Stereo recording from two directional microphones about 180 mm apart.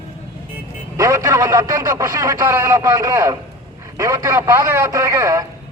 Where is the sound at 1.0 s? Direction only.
15° right (ahead or behind).